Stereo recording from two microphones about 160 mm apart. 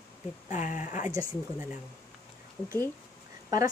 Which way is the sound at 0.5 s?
50° left (ahead or behind).